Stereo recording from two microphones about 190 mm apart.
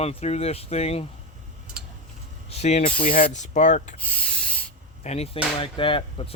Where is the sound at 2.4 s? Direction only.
35° left (ahead or behind).